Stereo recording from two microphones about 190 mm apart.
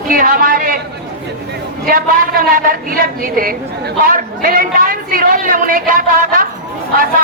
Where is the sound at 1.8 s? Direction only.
50° right (ahead or behind).